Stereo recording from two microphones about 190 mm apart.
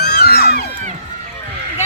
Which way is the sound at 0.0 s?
55° left (ahead or behind).